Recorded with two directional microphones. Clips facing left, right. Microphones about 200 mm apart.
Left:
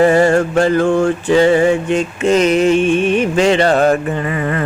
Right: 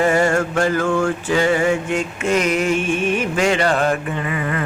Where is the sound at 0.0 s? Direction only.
35° left (ahead or behind).